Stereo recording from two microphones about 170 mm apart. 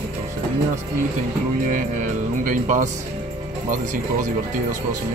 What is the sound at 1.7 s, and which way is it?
Speech, 50° right (ahead or behind).